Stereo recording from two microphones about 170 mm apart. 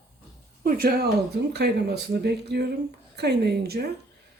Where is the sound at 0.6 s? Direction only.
60° right (ahead or behind).